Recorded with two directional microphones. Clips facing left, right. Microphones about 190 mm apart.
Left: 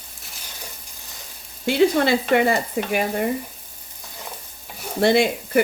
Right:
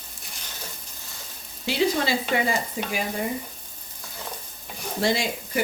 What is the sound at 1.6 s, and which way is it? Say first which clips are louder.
Speech: left 6 dB; 55° left (ahead or behind).